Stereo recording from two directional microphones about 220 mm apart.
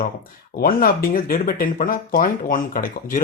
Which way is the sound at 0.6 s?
40° left (ahead or behind).